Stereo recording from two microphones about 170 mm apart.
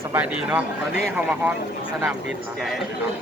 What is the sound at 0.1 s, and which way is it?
Speech, 10° right (ahead or behind).